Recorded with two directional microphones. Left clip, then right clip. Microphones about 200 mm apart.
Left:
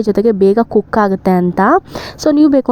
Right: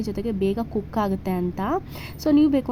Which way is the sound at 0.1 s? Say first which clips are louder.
Left 16 dB; 35° left (ahead or behind).